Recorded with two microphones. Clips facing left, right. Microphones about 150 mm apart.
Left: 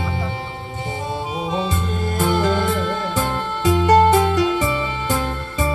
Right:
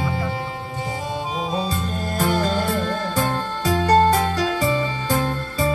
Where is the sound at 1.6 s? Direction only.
20° left (ahead or behind).